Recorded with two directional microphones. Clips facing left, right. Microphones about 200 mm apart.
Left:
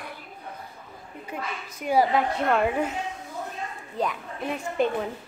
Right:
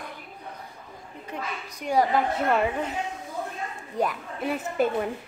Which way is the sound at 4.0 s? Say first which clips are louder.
Right 2 dB; 5° right (ahead or behind).